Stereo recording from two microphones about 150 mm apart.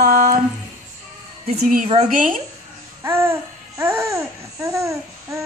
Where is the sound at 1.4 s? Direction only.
60° right (ahead or behind).